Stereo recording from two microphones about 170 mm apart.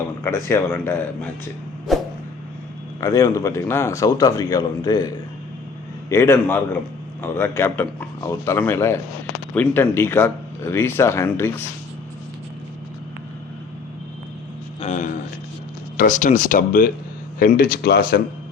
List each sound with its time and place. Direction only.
0.2 s speech: 15° left (ahead or behind)
1.9 s vehicle: centre (ahead or behind)
3.0 s a man's voice: 20° left (ahead or behind)
14.8 s a sound: 45° left (ahead or behind)
16.0 s speech: 50° left (ahead or behind); by 18.2 s 65° left (ahead or behind)